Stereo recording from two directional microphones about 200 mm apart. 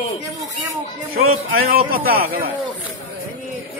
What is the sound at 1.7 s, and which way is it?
Speech, 50° right (ahead or behind).